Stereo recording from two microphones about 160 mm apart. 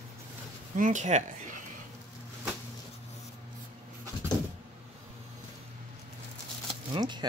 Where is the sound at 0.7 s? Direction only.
55° right (ahead or behind).